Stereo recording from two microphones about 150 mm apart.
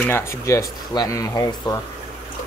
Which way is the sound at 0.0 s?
15° left (ahead or behind).